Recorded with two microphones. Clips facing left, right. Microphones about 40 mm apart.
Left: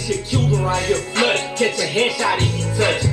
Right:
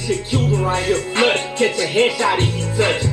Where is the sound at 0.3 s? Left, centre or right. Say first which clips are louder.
Even; centre.